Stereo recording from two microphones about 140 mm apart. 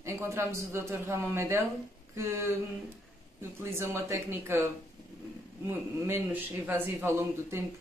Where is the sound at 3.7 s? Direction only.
15° right (ahead or behind).